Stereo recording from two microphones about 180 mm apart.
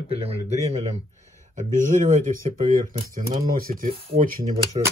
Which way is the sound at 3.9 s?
30° right (ahead or behind).